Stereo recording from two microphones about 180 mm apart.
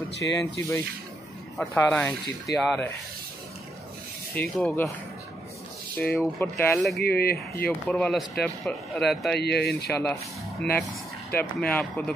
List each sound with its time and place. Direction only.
0.2 s speech: 15° left (ahead or behind)
4.4 s speech: 5° left (ahead or behind)
5.9 s speech: 10° left (ahead or behind)
7.0 s speech: 60° left (ahead or behind)
7.6 s speech: 5° left (ahead or behind)
9.4 s speech: 65° left (ahead or behind)
10.6 s speech: 5° left (ahead or behind)